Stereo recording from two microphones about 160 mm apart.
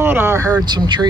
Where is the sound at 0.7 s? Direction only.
30° right (ahead or behind).